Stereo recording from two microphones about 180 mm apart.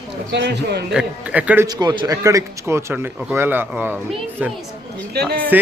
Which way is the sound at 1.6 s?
20° right (ahead or behind).